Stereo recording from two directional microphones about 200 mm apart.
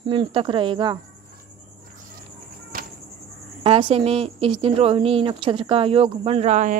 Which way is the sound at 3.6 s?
25° right (ahead or behind).